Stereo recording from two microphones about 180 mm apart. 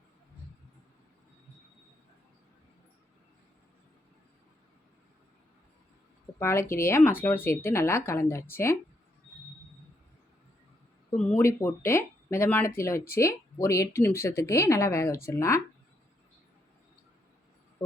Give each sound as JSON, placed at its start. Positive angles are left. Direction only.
{"t": 6.4, "sound": "speech", "side_deg": 15}
{"t": 11.2, "sound": "speech", "side_deg": 10}